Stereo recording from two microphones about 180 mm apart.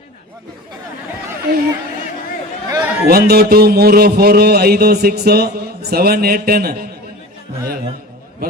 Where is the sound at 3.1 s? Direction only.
60° right (ahead or behind).